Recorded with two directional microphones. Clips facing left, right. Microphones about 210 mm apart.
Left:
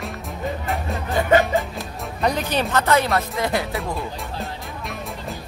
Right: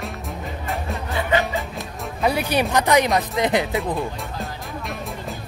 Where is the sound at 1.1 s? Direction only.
45° left (ahead or behind).